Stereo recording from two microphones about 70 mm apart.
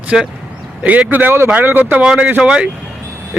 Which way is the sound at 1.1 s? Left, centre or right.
Right.